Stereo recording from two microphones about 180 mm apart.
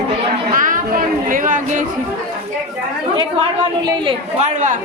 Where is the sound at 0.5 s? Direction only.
50° right (ahead or behind).